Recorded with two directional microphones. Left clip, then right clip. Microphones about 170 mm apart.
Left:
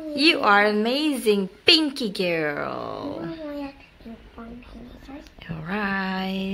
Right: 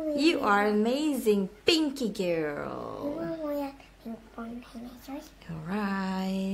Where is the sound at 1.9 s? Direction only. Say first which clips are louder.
Left 5 dB; centre (ahead or behind).